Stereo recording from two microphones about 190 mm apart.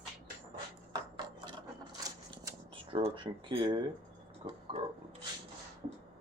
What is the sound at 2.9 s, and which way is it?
Speech, 25° right (ahead or behind).